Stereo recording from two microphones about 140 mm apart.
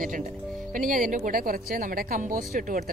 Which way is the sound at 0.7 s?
75° right (ahead or behind).